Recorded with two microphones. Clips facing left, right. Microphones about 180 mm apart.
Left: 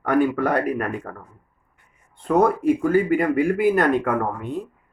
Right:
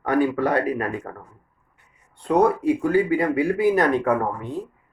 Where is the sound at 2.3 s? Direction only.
50° left (ahead or behind).